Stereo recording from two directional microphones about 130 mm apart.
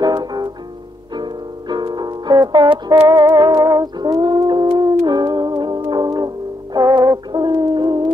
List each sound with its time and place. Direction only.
0.0 s music: 35° right (ahead or behind)